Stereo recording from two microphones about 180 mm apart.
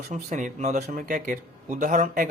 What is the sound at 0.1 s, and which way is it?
A man's voice, 45° right (ahead or behind).